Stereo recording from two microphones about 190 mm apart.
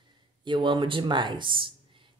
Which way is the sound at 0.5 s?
25° right (ahead or behind).